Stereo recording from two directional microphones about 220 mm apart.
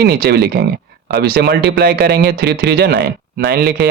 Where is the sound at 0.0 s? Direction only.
45° right (ahead or behind).